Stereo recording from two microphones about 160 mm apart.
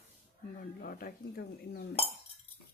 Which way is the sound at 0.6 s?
60° left (ahead or behind).